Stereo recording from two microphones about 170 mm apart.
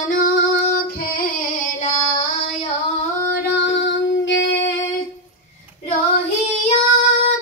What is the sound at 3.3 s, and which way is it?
Music, 85° left.